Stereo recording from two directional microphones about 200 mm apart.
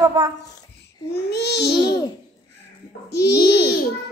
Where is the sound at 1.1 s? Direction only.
55° left (ahead or behind).